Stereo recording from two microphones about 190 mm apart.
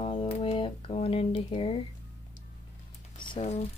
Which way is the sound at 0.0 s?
30° left (ahead or behind).